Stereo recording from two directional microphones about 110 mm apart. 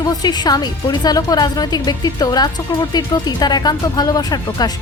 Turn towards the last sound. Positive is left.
turn(degrees=40)  # may be behind; listen again after turning